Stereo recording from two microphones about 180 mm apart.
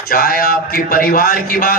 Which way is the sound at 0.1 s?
55° left (ahead or behind).